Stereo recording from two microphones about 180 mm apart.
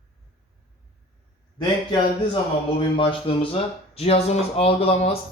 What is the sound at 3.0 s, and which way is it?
Speech, 30° left (ahead or behind).